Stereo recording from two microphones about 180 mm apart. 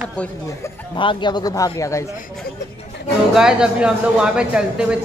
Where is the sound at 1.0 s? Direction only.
25° left (ahead or behind).